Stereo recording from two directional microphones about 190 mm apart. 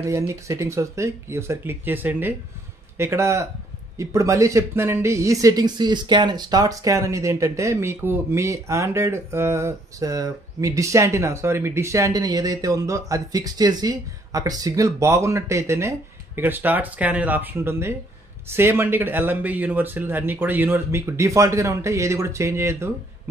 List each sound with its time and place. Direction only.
0.0 s speech: 15° right (ahead or behind)